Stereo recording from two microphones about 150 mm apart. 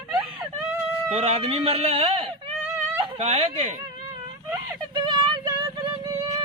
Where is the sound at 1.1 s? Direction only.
40° right (ahead or behind).